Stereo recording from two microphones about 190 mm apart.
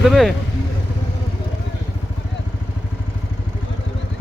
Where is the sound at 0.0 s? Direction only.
Centre (ahead or behind).